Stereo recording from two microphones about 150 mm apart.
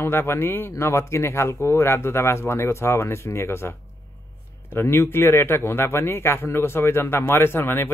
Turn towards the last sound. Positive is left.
turn(degrees=15)  # may be behind; listen again after turning